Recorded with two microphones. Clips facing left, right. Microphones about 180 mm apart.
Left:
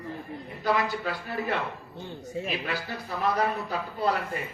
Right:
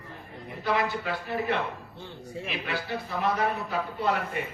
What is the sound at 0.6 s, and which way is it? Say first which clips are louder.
Speech: left 1 dB; 40° left (ahead or behind).